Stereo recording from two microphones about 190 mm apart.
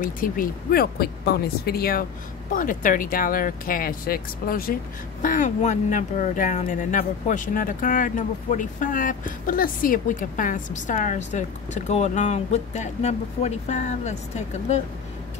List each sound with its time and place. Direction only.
0.0 s speech: 45° left (ahead or behind)